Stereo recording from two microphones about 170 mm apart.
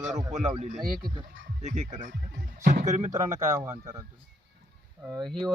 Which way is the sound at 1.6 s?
45° right (ahead or behind).